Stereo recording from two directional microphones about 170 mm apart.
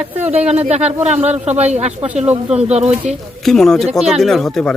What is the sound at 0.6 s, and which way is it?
Speech, 40° right (ahead or behind).